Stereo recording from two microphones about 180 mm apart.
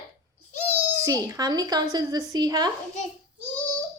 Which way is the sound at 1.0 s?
20° right (ahead or behind).